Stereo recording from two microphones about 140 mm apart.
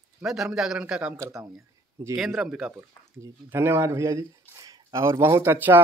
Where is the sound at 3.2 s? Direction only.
15° right (ahead or behind).